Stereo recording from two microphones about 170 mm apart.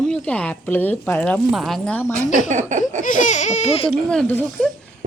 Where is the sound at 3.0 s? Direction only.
45° left (ahead or behind).